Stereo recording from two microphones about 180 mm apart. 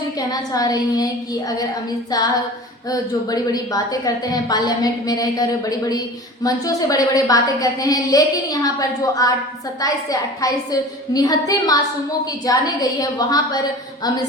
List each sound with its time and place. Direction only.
0.2 s a woman's voice: 20° left (ahead or behind)